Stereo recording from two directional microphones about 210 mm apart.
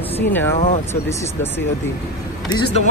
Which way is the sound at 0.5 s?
35° left (ahead or behind).